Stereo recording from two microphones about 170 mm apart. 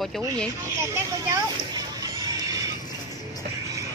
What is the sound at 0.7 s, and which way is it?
Speech, 15° right (ahead or behind).